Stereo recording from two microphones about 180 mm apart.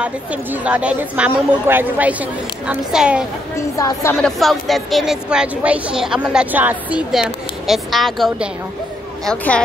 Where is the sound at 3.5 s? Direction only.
15° left (ahead or behind).